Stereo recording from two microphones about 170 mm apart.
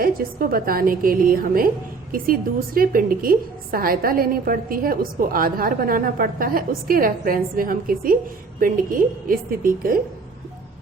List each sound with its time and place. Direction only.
0.0 s a woman's voice: 60° right (ahead or behind)